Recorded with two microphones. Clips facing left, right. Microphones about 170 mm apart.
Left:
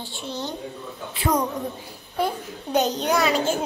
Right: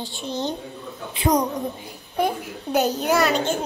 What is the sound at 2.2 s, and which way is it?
A child's voice, 10° right (ahead or behind).